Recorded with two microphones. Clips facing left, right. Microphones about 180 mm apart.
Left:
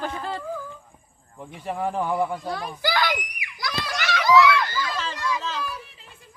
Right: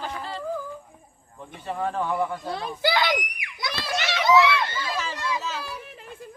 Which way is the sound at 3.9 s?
25° right (ahead or behind).